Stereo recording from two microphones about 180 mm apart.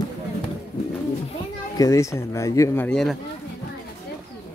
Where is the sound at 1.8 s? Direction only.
15° left (ahead or behind).